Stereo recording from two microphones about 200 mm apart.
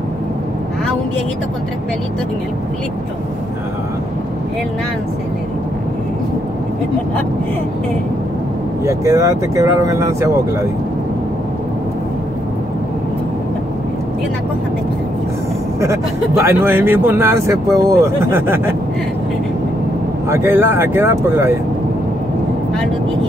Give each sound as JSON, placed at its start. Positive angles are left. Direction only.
{"t": 8.8, "sound": "speech", "side_deg": -15}
{"t": 15.8, "sound": "speech", "side_deg": -15}
{"t": 20.2, "sound": "speech", "side_deg": -10}